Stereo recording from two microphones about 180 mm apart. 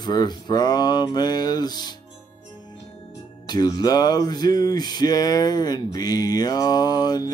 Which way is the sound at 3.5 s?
25° left (ahead or behind).